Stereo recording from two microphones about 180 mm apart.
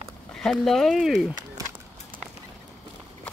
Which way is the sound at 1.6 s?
20° right (ahead or behind).